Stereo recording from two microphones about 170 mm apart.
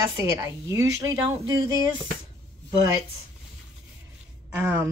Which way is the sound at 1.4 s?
25° right (ahead or behind).